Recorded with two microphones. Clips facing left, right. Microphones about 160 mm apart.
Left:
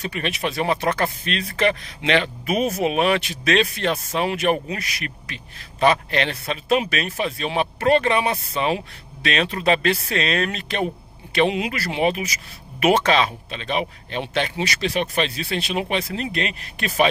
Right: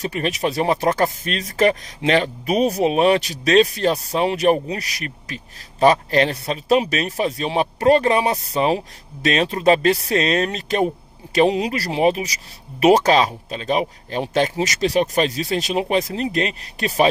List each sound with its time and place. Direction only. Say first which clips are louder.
0.0 s speech: right 4 dB; 40° right (ahead or behind)